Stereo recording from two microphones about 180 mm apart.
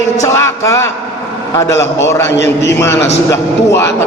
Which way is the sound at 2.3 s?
75° left (ahead or behind).